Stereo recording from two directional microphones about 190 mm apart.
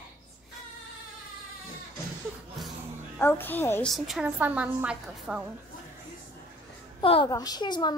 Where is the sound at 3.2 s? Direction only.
10° left (ahead or behind).